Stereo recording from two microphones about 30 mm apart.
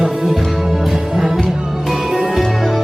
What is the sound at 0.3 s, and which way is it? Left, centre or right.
Music, centre.